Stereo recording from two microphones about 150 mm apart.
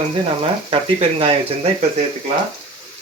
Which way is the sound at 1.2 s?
40° right (ahead or behind).